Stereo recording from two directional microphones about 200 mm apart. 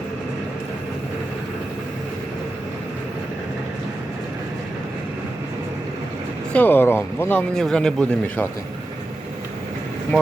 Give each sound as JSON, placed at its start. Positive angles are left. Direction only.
{"t": 6.5, "sound": "speech", "side_deg": 10}